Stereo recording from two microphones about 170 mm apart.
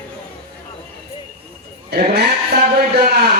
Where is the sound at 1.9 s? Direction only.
70° right (ahead or behind).